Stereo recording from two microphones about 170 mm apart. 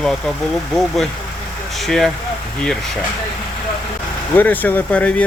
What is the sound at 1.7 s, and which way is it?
Speech, centre (ahead or behind).